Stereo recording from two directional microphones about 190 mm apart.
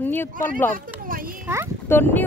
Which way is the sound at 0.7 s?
50° right (ahead or behind).